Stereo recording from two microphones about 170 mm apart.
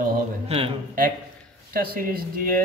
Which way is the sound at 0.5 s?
40° right (ahead or behind).